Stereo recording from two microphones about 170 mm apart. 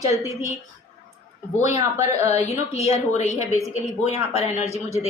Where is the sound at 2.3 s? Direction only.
40° left (ahead or behind).